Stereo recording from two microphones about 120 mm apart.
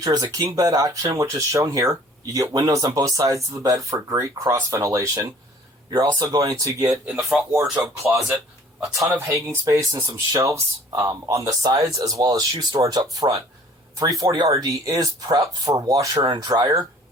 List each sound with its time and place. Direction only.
0.0 s speech: 30° right (ahead or behind)
6.9 s speech: centre (ahead or behind)
9.2 s speech: 25° right (ahead or behind)